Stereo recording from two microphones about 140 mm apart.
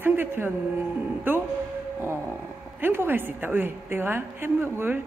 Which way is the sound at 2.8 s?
15° right (ahead or behind).